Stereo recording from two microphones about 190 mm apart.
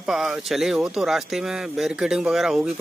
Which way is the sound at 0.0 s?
Centre (ahead or behind).